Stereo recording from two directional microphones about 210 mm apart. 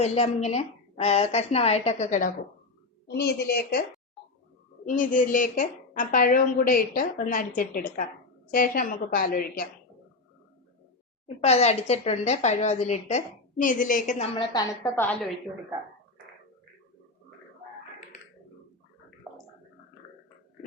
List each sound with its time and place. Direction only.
0.0 s a woman's voice: 30° left (ahead or behind)
3.1 s speech: 50° left (ahead or behind)
4.9 s a woman's voice: 40° left (ahead or behind)
11.3 s a woman's voice: 30° left (ahead or behind)
14.3 s a woman's voice: 20° left (ahead or behind)